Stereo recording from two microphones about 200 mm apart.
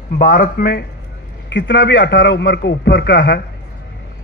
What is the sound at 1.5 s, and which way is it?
A man's voice, 60° left (ahead or behind).